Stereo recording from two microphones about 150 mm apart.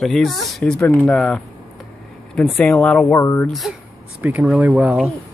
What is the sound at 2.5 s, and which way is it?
Speech, 10° left (ahead or behind).